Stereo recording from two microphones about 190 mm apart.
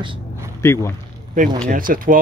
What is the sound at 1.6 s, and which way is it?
Speech, 45° right (ahead or behind).